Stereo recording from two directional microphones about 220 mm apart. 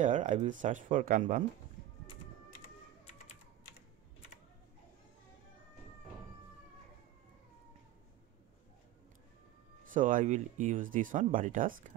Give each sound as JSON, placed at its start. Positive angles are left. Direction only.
{"t": 0.0, "sound": "speech", "side_deg": -35}
{"t": 9.8, "sound": "speech", "side_deg": -35}